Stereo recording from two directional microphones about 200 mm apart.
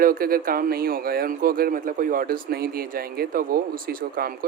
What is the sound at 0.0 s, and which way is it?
Speech, 45° right (ahead or behind).